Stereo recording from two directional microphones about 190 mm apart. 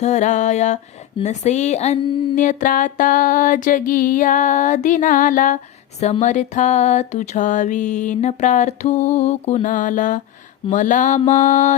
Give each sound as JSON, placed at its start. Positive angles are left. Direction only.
{"t": 0.0, "sound": "speech", "side_deg": 35}